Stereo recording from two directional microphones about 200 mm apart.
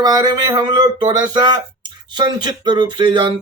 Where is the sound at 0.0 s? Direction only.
20° right (ahead or behind).